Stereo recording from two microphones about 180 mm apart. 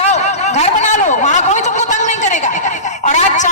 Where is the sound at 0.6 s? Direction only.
40° left (ahead or behind).